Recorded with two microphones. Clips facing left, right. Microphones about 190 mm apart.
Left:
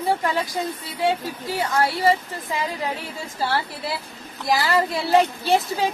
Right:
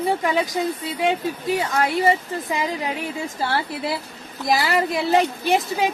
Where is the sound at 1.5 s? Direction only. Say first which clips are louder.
Even; 15° right (ahead or behind).